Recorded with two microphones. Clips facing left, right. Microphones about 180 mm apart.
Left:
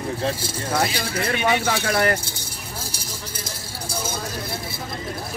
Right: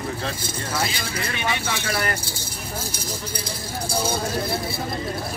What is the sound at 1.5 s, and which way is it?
Speech, 45° left (ahead or behind).